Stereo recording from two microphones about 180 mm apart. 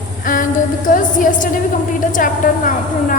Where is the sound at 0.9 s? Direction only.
50° left (ahead or behind).